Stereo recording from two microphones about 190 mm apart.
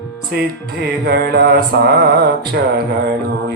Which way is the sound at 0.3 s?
55° right (ahead or behind).